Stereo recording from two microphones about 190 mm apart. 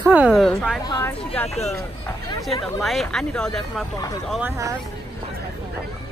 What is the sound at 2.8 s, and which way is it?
Speech, centre (ahead or behind).